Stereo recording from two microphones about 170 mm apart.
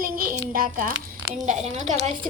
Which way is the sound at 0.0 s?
55° right (ahead or behind).